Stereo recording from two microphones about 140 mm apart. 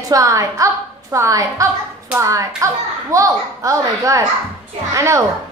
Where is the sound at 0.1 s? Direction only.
20° right (ahead or behind).